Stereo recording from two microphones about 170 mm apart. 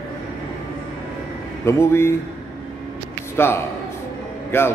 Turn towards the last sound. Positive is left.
turn(degrees=15)  # may be behind; listen again after turning